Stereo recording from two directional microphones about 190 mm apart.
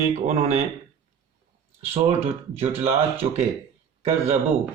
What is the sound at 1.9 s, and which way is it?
Speech, 30° right (ahead or behind).